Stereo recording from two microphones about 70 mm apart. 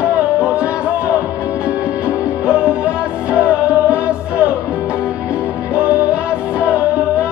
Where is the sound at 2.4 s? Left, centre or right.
Centre.